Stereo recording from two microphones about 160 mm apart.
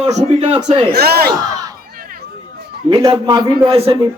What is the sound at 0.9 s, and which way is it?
Speech, 80° right.